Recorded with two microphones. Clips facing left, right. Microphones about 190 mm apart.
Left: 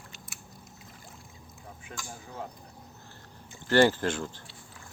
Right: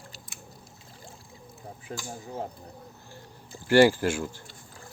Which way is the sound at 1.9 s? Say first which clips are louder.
Right 6 dB; 30° right (ahead or behind).